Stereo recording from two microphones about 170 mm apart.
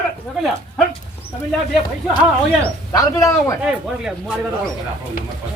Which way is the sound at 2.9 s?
20° left (ahead or behind).